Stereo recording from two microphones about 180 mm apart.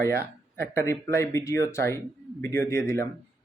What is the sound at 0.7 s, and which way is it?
Speech, 15° left (ahead or behind).